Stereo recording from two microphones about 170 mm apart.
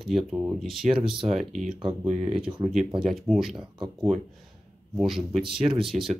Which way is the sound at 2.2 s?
30° right (ahead or behind).